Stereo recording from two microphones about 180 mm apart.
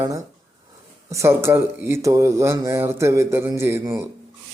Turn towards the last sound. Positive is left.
turn(degrees=-15)  # may be behind; listen again after turning